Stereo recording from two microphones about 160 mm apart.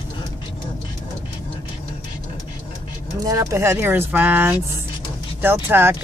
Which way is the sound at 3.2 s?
20° right (ahead or behind).